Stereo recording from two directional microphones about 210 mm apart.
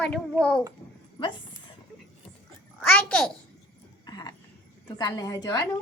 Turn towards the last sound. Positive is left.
turn(degrees=15)  # may be behind; listen again after turning